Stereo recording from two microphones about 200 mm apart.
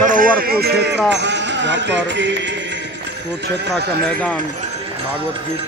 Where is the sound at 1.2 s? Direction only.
60° right (ahead or behind).